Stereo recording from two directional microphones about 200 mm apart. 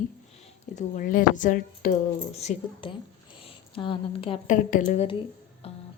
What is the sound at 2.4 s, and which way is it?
A woman's voice, 30° left (ahead or behind).